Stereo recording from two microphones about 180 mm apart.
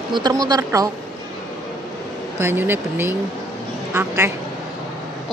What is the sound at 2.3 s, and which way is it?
A woman's voice, 10° right (ahead or behind).